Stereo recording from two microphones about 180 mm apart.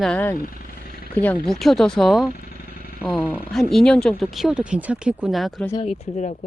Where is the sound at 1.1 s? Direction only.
10° left (ahead or behind).